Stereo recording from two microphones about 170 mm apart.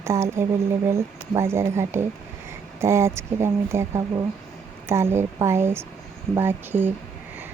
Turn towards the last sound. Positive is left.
turn(degrees=-10)  # may be behind; listen again after turning